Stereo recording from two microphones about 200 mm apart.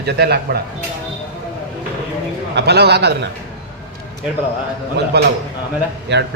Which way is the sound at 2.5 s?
55° right (ahead or behind).